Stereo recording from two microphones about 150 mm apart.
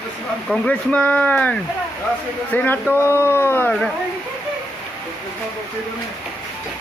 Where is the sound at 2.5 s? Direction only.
15° left (ahead or behind).